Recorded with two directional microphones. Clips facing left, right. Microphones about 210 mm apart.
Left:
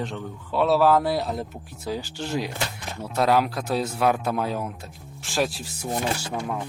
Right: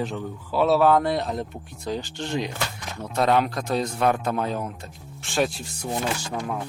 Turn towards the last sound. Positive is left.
turn(degrees=0)  # may be behind; listen again after turning